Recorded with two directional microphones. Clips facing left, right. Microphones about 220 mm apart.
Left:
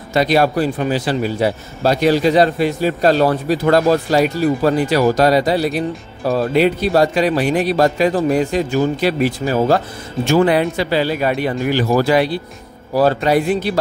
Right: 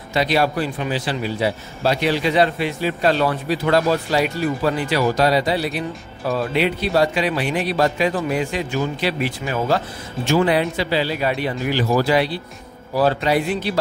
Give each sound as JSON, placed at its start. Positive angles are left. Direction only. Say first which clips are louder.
{"t": 0.1, "sound": "speech", "louder": "left 4 dB", "side_deg": 45}
{"t": 10.3, "sound": "speech", "louder": "left 4 dB", "side_deg": 50}